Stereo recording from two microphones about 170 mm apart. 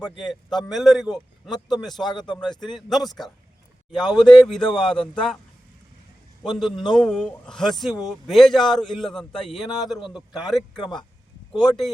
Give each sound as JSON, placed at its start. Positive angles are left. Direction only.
{"t": 0.2, "sound": "a man's voice", "side_deg": 0}
{"t": 1.1, "sound": "a man's voice", "side_deg": 25}
{"t": 1.6, "sound": "a man's voice", "side_deg": 0}
{"t": 2.0, "sound": "speech", "side_deg": 25}
{"t": 2.4, "sound": "a man's voice", "side_deg": 5}
{"t": 6.4, "sound": "a man's voice", "side_deg": 0}